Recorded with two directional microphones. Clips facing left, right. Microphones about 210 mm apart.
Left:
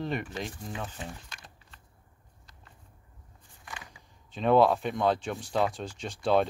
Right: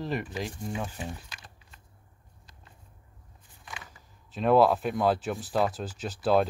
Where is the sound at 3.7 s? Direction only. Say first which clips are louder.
Even; centre (ahead or behind).